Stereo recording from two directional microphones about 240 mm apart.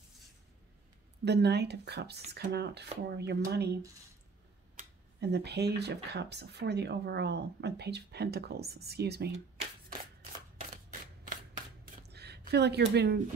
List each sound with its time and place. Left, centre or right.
1.2 s speech: right
10.7 s camera: right
11.8 s shuffling cards: right